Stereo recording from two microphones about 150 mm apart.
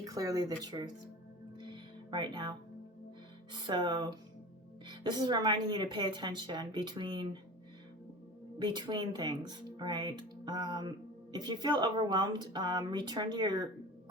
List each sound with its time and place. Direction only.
0.0 s speech: 25° right (ahead or behind)
1.5 s music: 30° right (ahead or behind)
3.5 s a woman's voice: 30° right (ahead or behind)
8.5 s speech: 30° right (ahead or behind)